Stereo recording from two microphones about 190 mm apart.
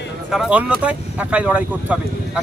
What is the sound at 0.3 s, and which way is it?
Speech, centre (ahead or behind).